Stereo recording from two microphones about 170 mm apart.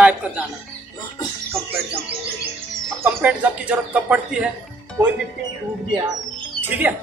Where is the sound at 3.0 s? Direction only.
10° right (ahead or behind).